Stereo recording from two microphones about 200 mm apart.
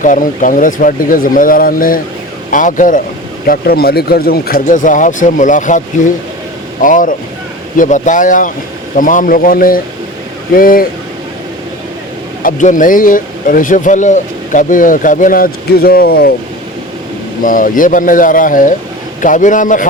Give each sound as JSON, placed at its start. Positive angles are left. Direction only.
{"t": 0.0, "sound": "speech", "side_deg": 40}
{"t": 12.4, "sound": "speech", "side_deg": 40}
{"t": 17.4, "sound": "speech", "side_deg": 40}